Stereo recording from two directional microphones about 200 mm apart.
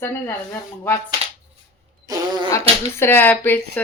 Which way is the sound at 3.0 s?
10° left (ahead or behind).